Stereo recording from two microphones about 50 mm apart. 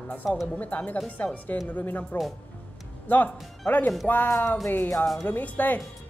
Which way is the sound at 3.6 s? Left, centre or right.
Left.